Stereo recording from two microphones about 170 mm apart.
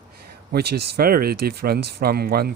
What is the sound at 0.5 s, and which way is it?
Speech, 70° right (ahead or behind).